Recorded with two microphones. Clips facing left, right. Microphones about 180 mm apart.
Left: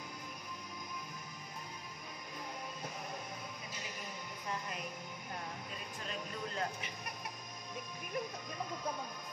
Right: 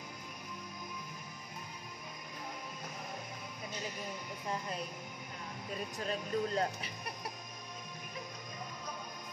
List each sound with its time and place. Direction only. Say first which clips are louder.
6.0 s speech: right 8 dB; 35° right (ahead or behind)